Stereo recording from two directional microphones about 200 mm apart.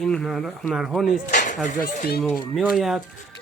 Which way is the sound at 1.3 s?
40° left (ahead or behind).